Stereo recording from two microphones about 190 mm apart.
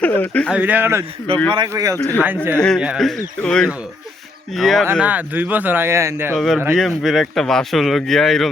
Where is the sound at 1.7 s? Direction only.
15° right (ahead or behind).